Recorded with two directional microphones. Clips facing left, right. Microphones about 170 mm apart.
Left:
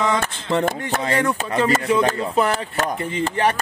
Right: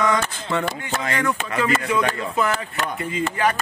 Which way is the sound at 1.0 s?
30° left (ahead or behind).